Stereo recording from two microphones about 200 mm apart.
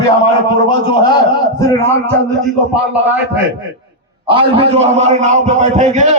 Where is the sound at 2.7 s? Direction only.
5° right (ahead or behind).